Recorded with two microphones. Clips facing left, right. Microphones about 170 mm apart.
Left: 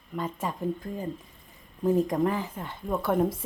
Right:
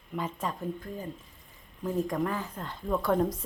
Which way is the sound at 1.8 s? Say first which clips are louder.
Left 6 dB; 25° left (ahead or behind).